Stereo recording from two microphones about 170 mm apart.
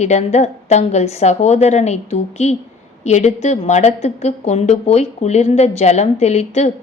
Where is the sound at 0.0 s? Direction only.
40° left (ahead or behind).